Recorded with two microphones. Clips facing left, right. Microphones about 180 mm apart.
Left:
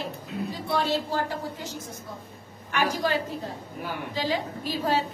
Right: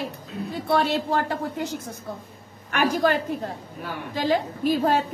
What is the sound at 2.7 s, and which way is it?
A woman's voice, 55° right (ahead or behind).